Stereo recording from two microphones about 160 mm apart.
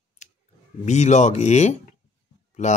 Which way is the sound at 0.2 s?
50° left (ahead or behind).